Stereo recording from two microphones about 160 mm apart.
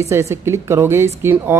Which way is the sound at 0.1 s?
15° right (ahead or behind).